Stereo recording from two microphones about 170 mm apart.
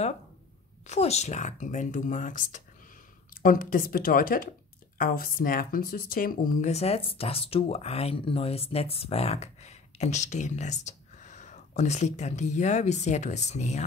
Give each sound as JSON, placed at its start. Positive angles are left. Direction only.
{"t": 0.8, "sound": "speech", "side_deg": 40}
{"t": 6.7, "sound": "speech", "side_deg": 40}